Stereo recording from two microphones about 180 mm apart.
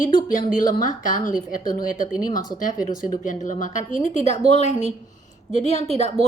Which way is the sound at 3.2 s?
45° left (ahead or behind).